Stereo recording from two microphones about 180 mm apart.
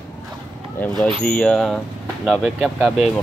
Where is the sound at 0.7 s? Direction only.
10° left (ahead or behind).